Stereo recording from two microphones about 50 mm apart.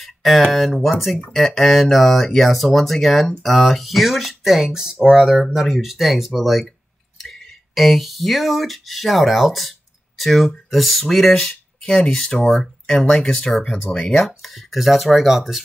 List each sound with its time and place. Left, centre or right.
0.0 s a sound: centre
0.5 s speech: centre
13.7 s speech: left
14.0 s speech: centre